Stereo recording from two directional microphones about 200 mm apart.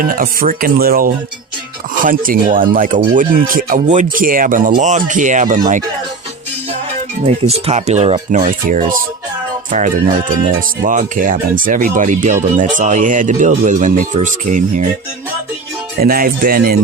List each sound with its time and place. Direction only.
0.0 s speech: 45° right (ahead or behind)
7.2 s speech: 35° right (ahead or behind)
8.4 s speech: 45° right (ahead or behind)
10.8 s speech: 40° right (ahead or behind)
16.0 s speech: 50° right (ahead or behind)